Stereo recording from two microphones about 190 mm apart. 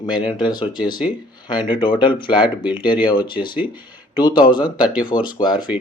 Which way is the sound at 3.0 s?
25° left (ahead or behind).